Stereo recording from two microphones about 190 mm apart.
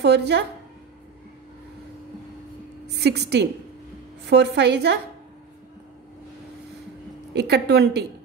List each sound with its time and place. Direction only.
0.0 s a woman's voice: 60° right (ahead or behind)
2.9 s a woman's voice: 60° right (ahead or behind)
7.3 s a woman's voice: 60° right (ahead or behind)